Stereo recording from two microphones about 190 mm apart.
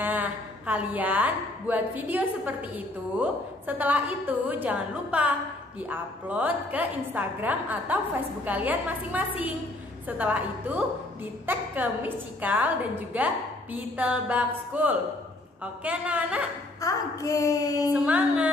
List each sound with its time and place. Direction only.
0.0 s a woman's voice: 10° right (ahead or behind)
16.8 s a woman's voice: 15° left (ahead or behind)
17.9 s a woman's voice: 5° right (ahead or behind)